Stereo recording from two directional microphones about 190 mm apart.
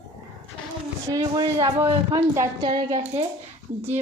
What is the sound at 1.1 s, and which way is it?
A woman's voice, 20° right (ahead or behind).